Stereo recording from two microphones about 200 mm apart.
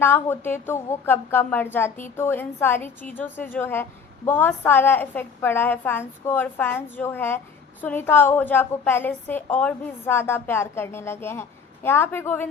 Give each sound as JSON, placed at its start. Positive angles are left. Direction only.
{"t": 0.0, "sound": "a woman's voice", "side_deg": 10}